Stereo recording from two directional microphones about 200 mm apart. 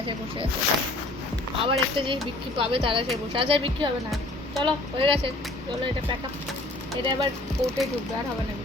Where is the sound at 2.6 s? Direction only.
25° right (ahead or behind).